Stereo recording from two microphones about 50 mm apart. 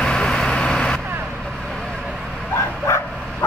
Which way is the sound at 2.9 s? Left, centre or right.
Left.